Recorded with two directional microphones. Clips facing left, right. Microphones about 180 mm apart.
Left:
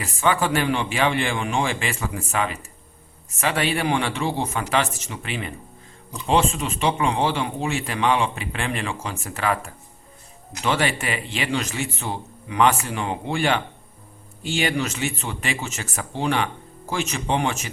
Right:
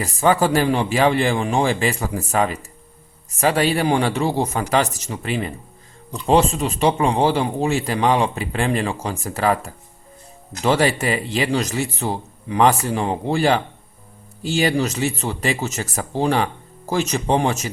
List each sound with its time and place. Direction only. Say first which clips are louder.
0.0 s speech: right 5 dB; 40° right (ahead or behind)